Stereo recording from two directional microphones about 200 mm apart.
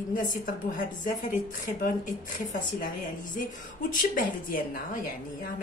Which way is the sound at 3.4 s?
45° left (ahead or behind).